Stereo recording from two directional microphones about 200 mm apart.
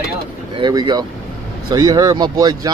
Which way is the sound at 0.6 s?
20° right (ahead or behind).